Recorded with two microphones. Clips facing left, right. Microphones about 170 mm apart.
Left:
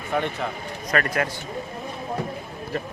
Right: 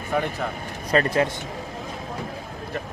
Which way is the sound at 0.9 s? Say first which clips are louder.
Right 4 dB; 25° right (ahead or behind).